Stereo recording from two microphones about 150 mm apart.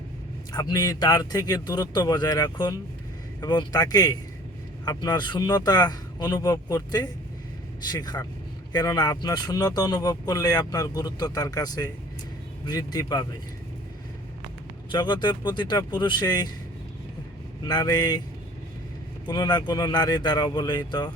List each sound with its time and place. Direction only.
0.5 s speech: 25° left (ahead or behind)
14.8 s speech: 30° left (ahead or behind)
17.7 s speech: 25° left (ahead or behind)
19.3 s speech: 30° left (ahead or behind)